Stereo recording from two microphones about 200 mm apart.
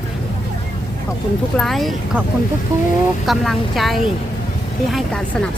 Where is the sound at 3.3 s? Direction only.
Centre (ahead or behind).